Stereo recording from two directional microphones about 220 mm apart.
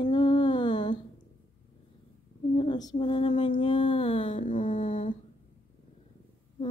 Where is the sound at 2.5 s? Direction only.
20° left (ahead or behind).